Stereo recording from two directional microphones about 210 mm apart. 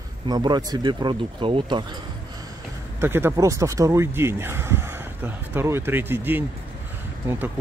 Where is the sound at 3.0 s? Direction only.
10° right (ahead or behind).